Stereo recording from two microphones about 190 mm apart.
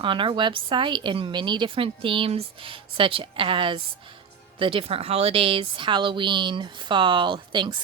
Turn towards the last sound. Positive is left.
turn(degrees=-25)  # may be behind; listen again after turning